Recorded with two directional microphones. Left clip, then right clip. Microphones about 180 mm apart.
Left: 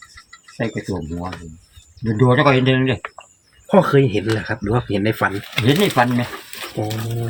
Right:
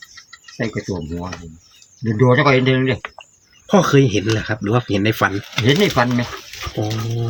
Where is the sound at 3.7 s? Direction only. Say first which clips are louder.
Even; 55° right (ahead or behind).